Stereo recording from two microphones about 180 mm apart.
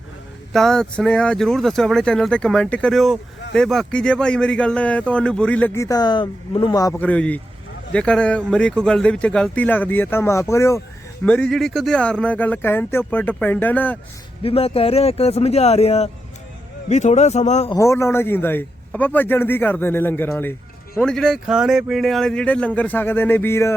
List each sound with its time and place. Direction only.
0.5 s a man's voice: 5° left (ahead or behind)
11.3 s a man's voice: 5° left (ahead or behind)
14.4 s speech: 30° left (ahead or behind)
17.7 s a man's voice: 15° left (ahead or behind)